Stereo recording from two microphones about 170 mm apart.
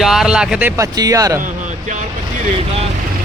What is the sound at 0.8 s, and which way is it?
Speech, 20° right (ahead or behind).